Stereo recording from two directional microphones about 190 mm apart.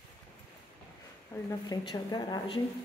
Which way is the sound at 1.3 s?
15° left (ahead or behind).